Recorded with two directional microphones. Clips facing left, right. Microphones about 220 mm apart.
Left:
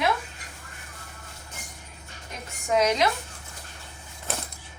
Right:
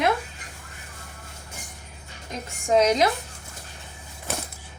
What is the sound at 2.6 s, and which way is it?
Speech, 35° right (ahead or behind).